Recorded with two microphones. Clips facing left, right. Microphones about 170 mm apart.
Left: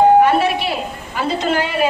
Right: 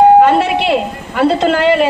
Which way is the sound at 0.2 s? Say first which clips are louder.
Right 4 dB; 80° right.